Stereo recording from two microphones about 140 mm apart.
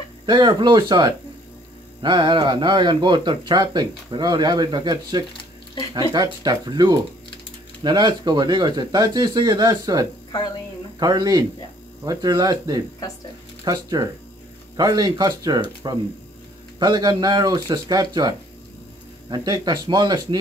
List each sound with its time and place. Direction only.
0.3 s speech: 35° right (ahead or behind)